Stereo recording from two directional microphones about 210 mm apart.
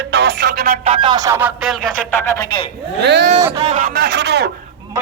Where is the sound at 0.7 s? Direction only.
25° right (ahead or behind); by 1.9 s 5° right (ahead or behind).